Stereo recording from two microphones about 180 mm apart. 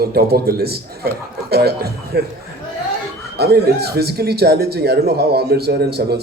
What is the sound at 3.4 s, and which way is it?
A man's voice, 60° right (ahead or behind).